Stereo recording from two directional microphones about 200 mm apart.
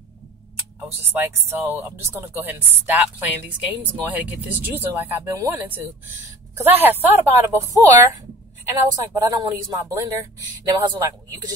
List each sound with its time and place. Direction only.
0.8 s speech: 10° right (ahead or behind)